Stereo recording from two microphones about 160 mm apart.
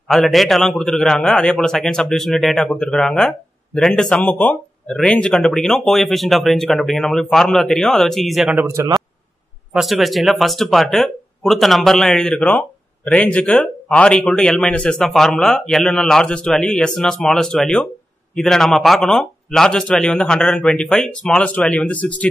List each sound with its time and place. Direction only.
0.1 s a man's voice: centre (ahead or behind)
8.6 s speech: 15° right (ahead or behind)
9.7 s a man's voice: centre (ahead or behind)